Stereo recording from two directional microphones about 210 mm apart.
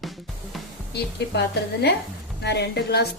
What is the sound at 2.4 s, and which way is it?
Speech, 55° left (ahead or behind).